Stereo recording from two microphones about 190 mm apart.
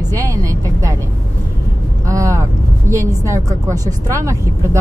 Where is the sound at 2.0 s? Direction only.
15° right (ahead or behind).